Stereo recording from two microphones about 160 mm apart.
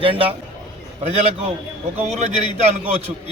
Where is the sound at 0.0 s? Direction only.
35° right (ahead or behind).